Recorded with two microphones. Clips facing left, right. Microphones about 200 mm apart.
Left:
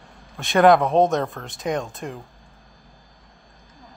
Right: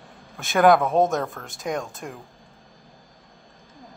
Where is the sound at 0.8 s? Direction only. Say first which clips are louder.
Left 2 dB; 20° left (ahead or behind).